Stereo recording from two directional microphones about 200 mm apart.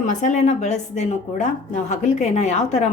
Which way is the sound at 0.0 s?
40° left (ahead or behind).